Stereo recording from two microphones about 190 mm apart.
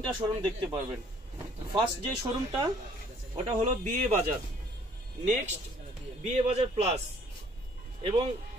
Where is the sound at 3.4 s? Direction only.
35° right (ahead or behind).